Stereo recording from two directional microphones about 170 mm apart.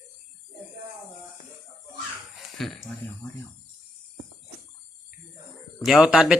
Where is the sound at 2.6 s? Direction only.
Centre (ahead or behind).